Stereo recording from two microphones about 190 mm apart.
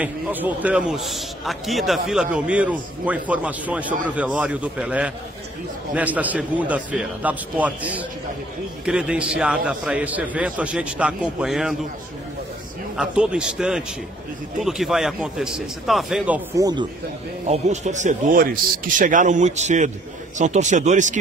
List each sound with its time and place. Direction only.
0.0 s a man's voice: 10° right (ahead or behind)
12.9 s a man's voice: 5° right (ahead or behind)
16.5 s speech: 20° right (ahead or behind)
17.5 s a man's voice: 40° right (ahead or behind)